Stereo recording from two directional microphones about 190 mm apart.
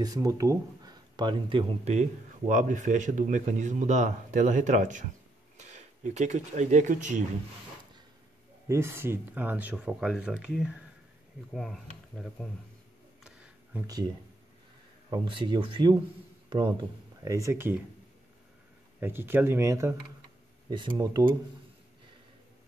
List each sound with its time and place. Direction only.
0.0 s speech: 20° right (ahead or behind); by 7.2 s 40° right (ahead or behind)
8.6 s speech: 15° right (ahead or behind)
13.7 s speech: 20° right (ahead or behind)
18.9 s speech: 10° right (ahead or behind)